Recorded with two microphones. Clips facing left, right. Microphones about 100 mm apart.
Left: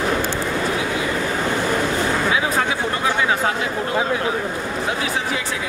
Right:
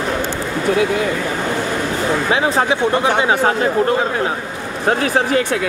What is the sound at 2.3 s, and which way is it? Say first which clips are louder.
Speech: right 4 dB; 30° right (ahead or behind).